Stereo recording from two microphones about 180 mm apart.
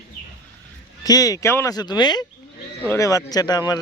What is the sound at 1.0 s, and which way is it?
Speech, 20° left (ahead or behind).